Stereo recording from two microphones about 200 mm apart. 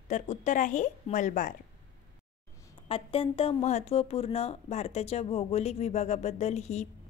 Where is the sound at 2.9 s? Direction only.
30° left (ahead or behind).